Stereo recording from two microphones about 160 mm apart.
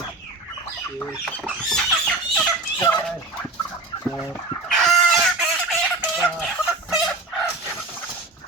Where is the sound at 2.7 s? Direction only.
15° left (ahead or behind).